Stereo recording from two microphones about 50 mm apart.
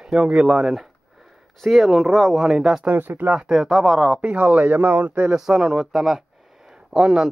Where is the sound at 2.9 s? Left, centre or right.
Right.